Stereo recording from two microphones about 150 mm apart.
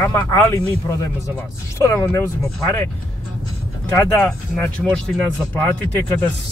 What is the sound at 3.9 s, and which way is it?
Speech, 15° left (ahead or behind).